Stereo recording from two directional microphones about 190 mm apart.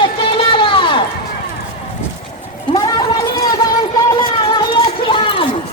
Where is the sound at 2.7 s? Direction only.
25° left (ahead or behind).